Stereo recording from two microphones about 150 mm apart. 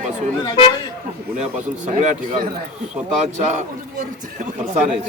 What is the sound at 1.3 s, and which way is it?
Speech, 55° right (ahead or behind).